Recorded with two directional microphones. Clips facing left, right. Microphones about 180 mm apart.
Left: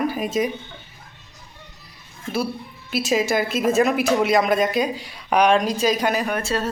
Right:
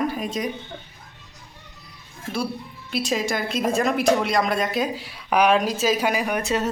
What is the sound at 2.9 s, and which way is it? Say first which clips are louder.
A woman's voice: left 4 dB; 5° left (ahead or behind).